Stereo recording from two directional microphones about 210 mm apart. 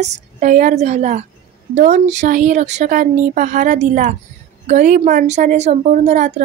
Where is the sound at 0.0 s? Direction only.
35° right (ahead or behind).